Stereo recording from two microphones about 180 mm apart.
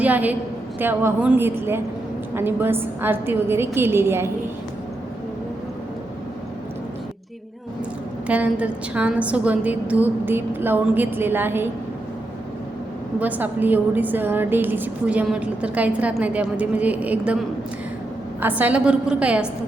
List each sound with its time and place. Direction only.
0.0 s a woman's voice: 10° right (ahead or behind)
8.3 s a woman's voice: 10° right (ahead or behind)
13.1 s a woman's voice: 10° right (ahead or behind)
18.4 s a woman's voice: 10° right (ahead or behind)